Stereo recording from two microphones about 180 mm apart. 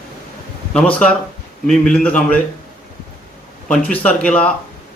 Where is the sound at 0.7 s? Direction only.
5° left (ahead or behind).